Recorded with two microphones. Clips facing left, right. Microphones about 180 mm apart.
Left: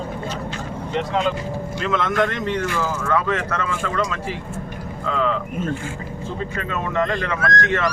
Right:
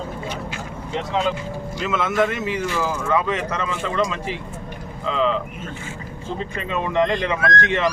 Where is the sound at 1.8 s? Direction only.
5° right (ahead or behind).